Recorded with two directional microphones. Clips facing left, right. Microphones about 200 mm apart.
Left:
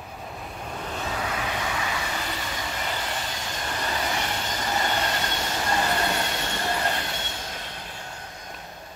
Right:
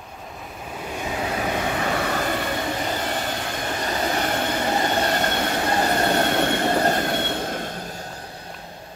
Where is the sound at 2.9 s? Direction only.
50° right (ahead or behind); by 8.4 s 35° right (ahead or behind).